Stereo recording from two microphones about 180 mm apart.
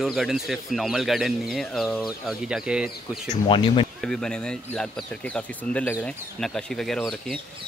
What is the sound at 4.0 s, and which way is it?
Speech, 5° left (ahead or behind).